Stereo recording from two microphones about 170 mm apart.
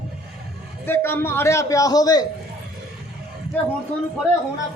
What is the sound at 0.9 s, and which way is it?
Speech, 15° left (ahead or behind).